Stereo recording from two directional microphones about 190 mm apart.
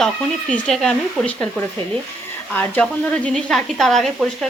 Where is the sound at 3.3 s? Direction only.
5° left (ahead or behind).